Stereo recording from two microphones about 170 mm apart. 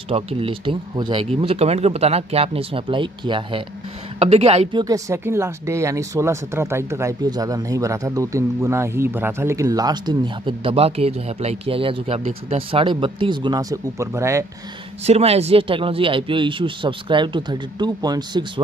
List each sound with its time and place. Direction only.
0.1 s speech: 35° right (ahead or behind)
4.8 s speech: 20° right (ahead or behind)
15.0 s speech: 40° right (ahead or behind)